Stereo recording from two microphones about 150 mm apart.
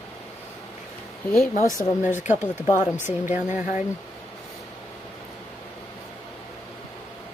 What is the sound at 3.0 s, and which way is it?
Speech, 15° right (ahead or behind).